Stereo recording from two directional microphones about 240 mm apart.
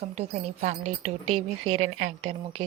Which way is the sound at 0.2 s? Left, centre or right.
Right.